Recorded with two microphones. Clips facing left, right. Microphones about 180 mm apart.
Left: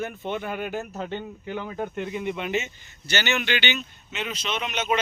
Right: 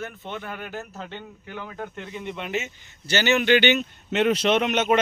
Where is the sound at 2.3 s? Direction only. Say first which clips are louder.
Left 2 dB; centre (ahead or behind).